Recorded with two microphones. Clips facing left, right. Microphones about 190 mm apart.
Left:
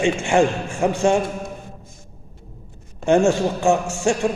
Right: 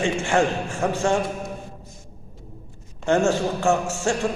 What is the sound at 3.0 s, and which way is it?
A man's voice, 15° left (ahead or behind).